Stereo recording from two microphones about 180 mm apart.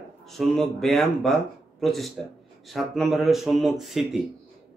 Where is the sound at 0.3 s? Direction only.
Centre (ahead or behind).